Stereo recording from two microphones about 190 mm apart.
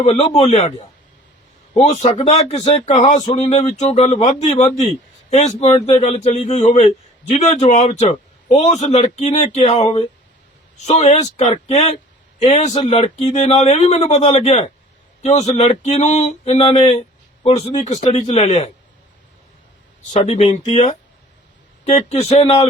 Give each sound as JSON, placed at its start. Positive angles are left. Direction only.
{"t": 0.0, "sound": "a man's voice", "side_deg": 35}
{"t": 1.8, "sound": "a man's voice", "side_deg": 40}
{"t": 20.2, "sound": "a man's voice", "side_deg": 35}